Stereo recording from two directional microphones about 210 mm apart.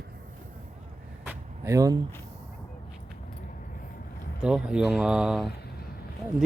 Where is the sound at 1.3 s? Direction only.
15° right (ahead or behind).